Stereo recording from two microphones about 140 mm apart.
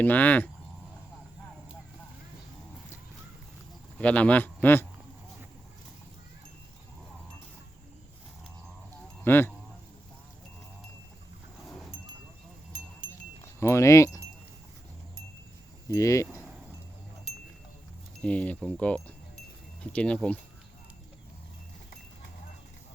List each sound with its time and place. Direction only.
0.0 s speech: 10° left (ahead or behind)
3.9 s speech: 10° left (ahead or behind)
9.2 s speech: 15° left (ahead or behind)
11.6 s a sound: centre (ahead or behind)
13.4 s speech: 20° left (ahead or behind)
15.9 s speech: 20° left (ahead or behind)
16.2 s a sound: 10° right (ahead or behind)
18.2 s speech: 10° left (ahead or behind)